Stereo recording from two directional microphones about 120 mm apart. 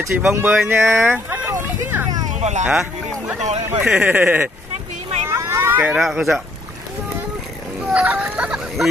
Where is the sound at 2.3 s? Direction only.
80° right.